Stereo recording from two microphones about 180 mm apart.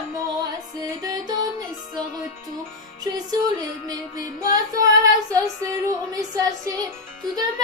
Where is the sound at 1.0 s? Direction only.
20° right (ahead or behind).